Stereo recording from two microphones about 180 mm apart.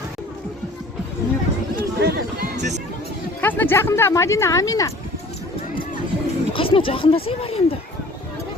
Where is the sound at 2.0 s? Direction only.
60° right (ahead or behind).